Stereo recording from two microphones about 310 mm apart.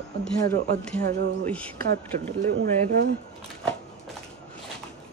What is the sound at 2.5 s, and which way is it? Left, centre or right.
Speech, right.